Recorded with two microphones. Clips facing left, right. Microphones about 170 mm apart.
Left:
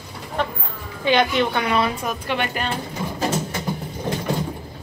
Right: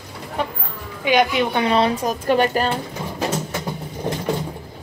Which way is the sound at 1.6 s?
30° right (ahead or behind).